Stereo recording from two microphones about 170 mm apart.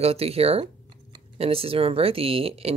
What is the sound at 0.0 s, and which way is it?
Speech, 35° right (ahead or behind).